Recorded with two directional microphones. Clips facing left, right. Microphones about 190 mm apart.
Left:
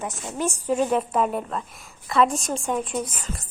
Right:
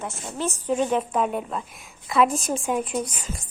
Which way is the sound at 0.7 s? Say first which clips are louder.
Even; centre (ahead or behind).